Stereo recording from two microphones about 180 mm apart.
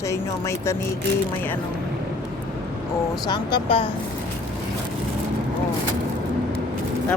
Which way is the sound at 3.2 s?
25° left (ahead or behind).